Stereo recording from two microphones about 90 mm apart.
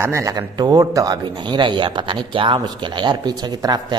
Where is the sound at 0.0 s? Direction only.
35° right (ahead or behind).